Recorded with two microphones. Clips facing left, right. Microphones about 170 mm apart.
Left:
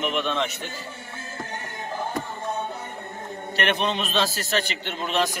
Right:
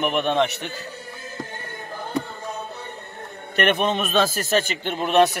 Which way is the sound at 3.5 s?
50° right (ahead or behind).